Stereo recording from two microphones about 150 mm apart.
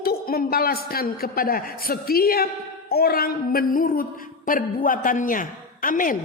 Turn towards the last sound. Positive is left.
turn(degrees=65)  # may be behind; listen again after turning